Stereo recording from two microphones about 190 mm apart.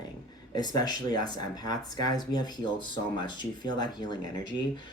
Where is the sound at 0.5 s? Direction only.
20° left (ahead or behind).